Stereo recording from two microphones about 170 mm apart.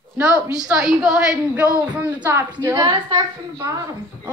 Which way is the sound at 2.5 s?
25° right (ahead or behind).